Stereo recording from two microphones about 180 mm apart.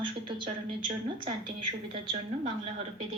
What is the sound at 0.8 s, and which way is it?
Speech, 25° right (ahead or behind).